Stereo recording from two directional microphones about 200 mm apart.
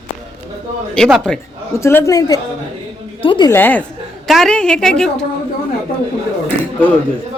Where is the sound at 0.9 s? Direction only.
5° left (ahead or behind).